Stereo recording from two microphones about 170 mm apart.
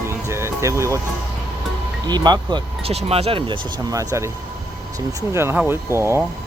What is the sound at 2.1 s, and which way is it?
Speech, 25° right (ahead or behind).